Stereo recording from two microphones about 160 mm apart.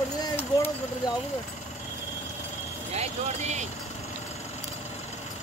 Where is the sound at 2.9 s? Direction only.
45° right (ahead or behind).